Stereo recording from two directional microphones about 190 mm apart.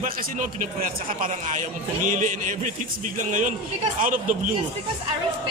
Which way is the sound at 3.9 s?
45° right (ahead or behind).